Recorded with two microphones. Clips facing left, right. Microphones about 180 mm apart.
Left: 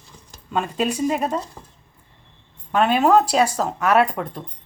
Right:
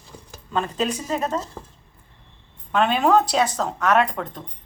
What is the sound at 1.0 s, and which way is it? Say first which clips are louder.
Speech: left 3 dB; 10° left (ahead or behind).